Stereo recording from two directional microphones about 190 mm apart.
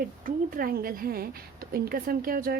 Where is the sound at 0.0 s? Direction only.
45° right (ahead or behind).